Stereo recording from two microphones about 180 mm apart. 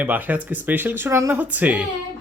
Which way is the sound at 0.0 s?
10° right (ahead or behind).